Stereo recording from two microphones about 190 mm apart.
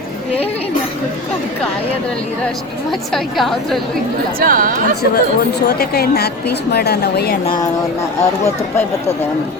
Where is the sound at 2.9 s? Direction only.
Centre (ahead or behind).